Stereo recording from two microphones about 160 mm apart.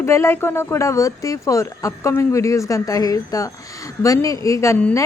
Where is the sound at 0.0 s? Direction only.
15° left (ahead or behind).